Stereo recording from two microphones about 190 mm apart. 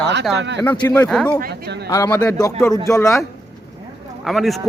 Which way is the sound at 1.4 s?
60° right (ahead or behind).